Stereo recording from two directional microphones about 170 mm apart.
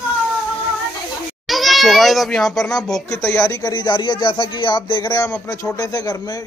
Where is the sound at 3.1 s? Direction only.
15° left (ahead or behind).